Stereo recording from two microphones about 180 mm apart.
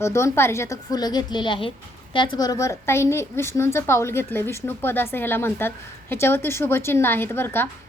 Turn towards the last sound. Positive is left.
turn(degrees=15)  # may be behind; listen again after turning